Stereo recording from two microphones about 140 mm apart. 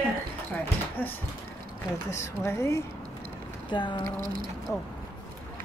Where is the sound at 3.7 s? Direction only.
35° left (ahead or behind).